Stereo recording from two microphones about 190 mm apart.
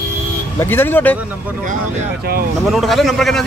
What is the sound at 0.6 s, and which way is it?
Speech, 10° left (ahead or behind).